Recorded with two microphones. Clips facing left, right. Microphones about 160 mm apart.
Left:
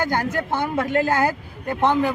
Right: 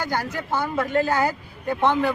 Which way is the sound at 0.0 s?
50° left (ahead or behind).